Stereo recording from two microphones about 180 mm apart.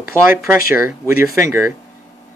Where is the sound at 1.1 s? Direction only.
50° left (ahead or behind).